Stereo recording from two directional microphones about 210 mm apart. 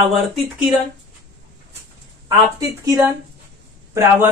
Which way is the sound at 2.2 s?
20° right (ahead or behind).